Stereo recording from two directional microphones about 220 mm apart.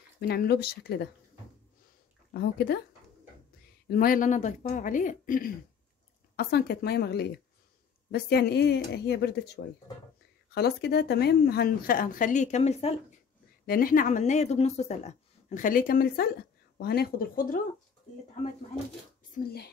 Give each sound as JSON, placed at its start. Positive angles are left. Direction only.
{"t": 0.2, "sound": "speech", "side_deg": 45}
{"t": 2.3, "sound": "speech", "side_deg": 50}
{"t": 3.8, "sound": "speech", "side_deg": 40}
{"t": 19.3, "sound": "speech", "side_deg": 45}